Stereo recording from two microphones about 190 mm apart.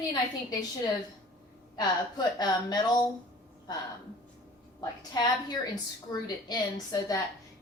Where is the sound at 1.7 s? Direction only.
20° left (ahead or behind).